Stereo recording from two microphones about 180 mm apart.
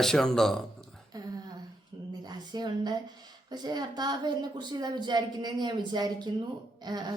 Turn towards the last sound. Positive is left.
turn(degrees=-25)  # may be behind; listen again after turning